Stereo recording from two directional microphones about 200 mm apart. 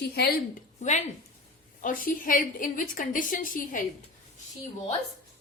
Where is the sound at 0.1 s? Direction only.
50° left (ahead or behind).